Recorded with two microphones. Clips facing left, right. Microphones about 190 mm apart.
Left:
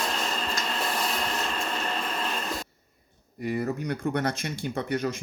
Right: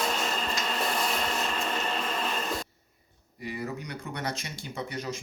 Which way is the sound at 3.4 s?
50° left (ahead or behind).